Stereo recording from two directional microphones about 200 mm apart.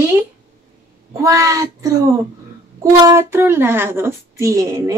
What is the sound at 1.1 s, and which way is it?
A woman's voice, 15° right (ahead or behind).